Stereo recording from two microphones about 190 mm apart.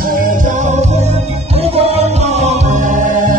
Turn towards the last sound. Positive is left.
turn(degrees=-40)  # may be behind; listen again after turning